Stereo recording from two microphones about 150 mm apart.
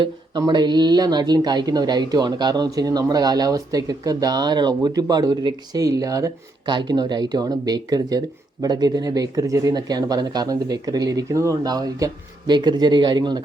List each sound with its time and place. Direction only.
0.0 s speech: 30° right (ahead or behind)